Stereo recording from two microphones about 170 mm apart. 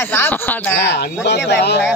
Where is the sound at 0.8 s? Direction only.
85° left.